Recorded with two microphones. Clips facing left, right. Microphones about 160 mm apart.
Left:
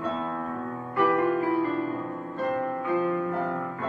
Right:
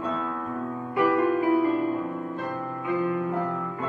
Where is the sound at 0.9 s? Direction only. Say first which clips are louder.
Right 1 dB; 15° right (ahead or behind).